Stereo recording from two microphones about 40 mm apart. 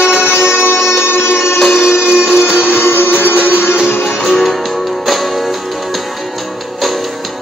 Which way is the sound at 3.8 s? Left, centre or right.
Left.